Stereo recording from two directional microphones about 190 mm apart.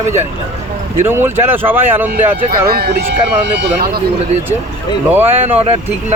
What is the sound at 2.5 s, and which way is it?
Speech, 50° right (ahead or behind).